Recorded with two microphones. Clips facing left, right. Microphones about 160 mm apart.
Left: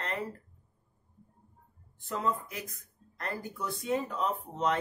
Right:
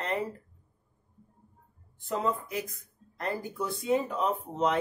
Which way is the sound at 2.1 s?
20° right (ahead or behind).